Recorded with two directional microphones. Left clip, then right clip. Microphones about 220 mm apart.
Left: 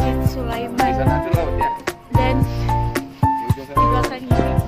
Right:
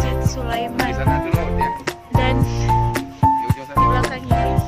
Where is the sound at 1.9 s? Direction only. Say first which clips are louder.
Left 1 dB; centre (ahead or behind).